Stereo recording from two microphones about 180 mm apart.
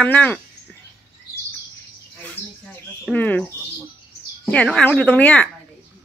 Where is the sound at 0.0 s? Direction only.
10° left (ahead or behind).